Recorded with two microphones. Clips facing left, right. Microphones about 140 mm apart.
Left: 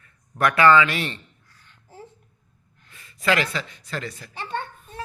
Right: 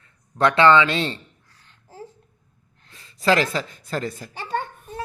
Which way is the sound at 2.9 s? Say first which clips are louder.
Right 3 dB; 30° right (ahead or behind).